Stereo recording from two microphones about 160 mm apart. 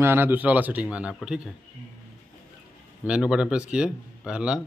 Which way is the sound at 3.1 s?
5° right (ahead or behind).